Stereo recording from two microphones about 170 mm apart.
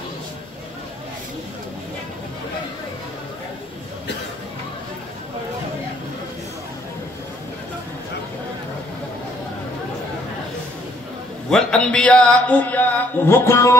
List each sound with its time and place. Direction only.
11.5 s music: 5° left (ahead or behind)